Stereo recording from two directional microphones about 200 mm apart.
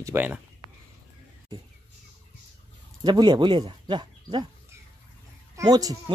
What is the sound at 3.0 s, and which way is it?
Speech, 20° right (ahead or behind).